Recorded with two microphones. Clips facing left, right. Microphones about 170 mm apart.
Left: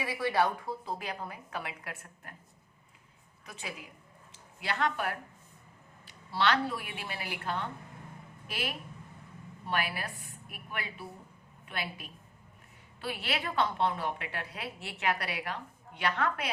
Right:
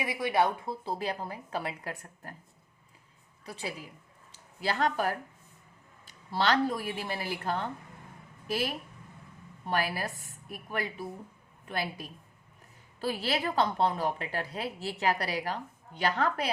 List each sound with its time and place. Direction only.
0.0 s a woman's voice: 15° right (ahead or behind); by 2.3 s 35° right (ahead or behind)
3.4 s a woman's voice: 35° right (ahead or behind)
6.3 s a woman's voice: 40° right (ahead or behind)